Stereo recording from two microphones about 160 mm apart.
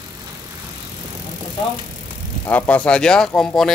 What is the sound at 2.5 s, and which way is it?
Speech, 10° left (ahead or behind).